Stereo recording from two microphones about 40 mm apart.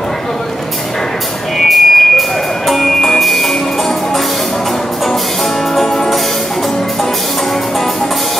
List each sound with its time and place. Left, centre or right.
1.6 s music: centre
5.8 s music: centre